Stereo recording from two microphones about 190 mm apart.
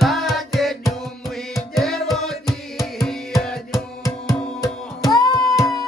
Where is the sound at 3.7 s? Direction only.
20° left (ahead or behind).